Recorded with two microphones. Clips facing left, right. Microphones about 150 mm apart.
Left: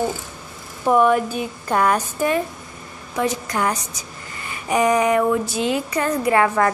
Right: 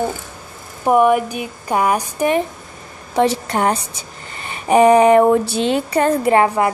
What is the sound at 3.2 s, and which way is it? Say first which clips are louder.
Speech: right 6 dB; 30° right (ahead or behind).